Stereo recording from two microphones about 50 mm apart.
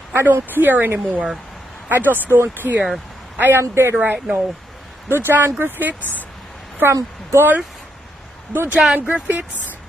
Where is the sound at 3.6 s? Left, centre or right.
Right.